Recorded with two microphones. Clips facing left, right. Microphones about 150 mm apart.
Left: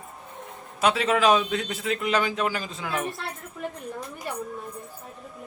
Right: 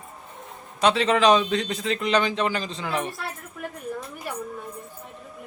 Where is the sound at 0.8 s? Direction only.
5° left (ahead or behind).